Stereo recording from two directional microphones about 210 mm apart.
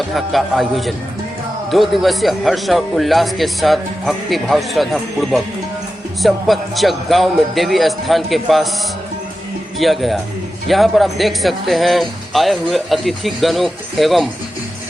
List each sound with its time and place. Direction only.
0.1 s speech: centre (ahead or behind)
9.7 s speech: centre (ahead or behind)